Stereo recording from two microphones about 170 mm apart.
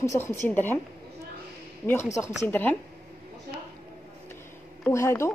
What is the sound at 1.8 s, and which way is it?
Speech, 15° left (ahead or behind).